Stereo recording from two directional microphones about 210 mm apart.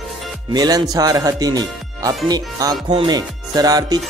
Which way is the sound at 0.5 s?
20° right (ahead or behind).